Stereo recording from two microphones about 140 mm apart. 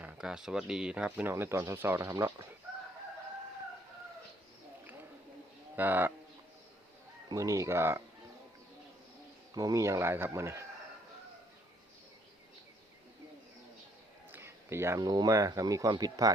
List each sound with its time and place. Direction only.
0.0 s speech: 5° right (ahead or behind); by 2.5 s 20° right (ahead or behind)
5.7 s speech: 15° right (ahead or behind)
7.3 s speech: 20° right (ahead or behind)
9.6 s speech: 25° right (ahead or behind)
14.3 s speech: 20° right (ahead or behind)